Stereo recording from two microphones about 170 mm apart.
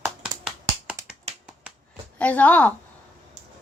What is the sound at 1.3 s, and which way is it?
Finger snapping, 40° right (ahead or behind).